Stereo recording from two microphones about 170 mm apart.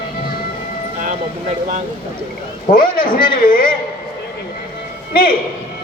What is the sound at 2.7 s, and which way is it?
Speech, 55° left (ahead or behind).